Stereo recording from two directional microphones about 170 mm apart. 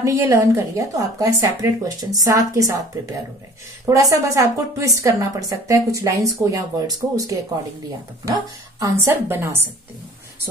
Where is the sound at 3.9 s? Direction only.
20° right (ahead or behind).